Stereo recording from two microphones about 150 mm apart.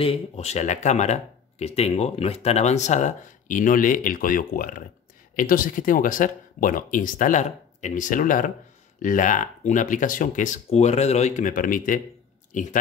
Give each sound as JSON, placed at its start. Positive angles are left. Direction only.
{"t": 0.0, "sound": "speech", "side_deg": 45}